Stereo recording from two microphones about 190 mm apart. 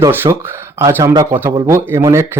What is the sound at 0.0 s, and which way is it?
Speech, 15° right (ahead or behind).